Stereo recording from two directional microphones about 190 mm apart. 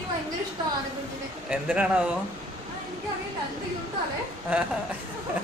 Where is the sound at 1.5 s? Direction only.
5° right (ahead or behind).